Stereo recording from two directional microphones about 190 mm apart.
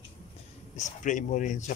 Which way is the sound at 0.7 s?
40° left (ahead or behind).